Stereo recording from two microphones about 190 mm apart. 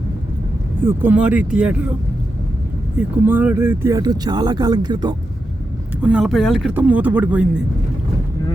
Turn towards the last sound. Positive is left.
turn(degrees=-5)  # may be behind; listen again after turning